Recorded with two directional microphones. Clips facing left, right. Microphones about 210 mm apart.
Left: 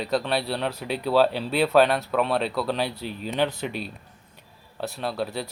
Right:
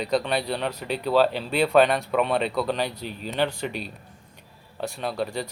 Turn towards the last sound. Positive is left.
turn(degrees=5)  # may be behind; listen again after turning